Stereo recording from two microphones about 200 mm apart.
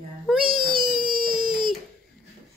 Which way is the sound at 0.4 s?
45° right (ahead or behind).